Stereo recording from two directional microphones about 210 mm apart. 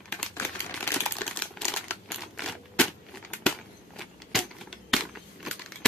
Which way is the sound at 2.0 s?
Centre (ahead or behind).